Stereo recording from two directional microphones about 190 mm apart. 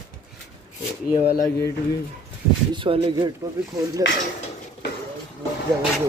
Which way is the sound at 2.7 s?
25° right (ahead or behind).